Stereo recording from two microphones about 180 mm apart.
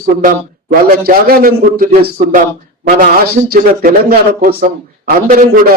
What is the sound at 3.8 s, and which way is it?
A man's voice, 55° right (ahead or behind).